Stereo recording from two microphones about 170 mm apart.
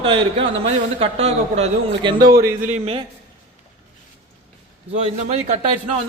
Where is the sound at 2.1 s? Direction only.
20° right (ahead or behind).